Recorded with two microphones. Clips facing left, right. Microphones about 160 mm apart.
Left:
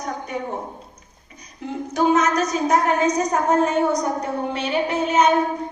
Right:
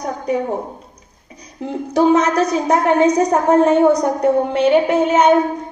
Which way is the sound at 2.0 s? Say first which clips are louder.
Right 5 dB; 35° right (ahead or behind).